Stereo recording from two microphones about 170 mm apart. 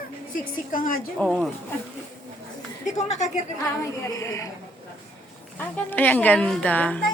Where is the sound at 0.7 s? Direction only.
55° left (ahead or behind).